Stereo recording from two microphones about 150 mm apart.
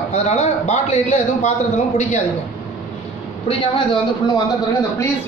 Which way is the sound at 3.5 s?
35° left (ahead or behind).